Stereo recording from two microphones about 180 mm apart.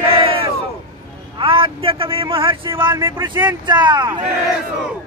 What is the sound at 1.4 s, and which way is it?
Vehicle, 30° right (ahead or behind).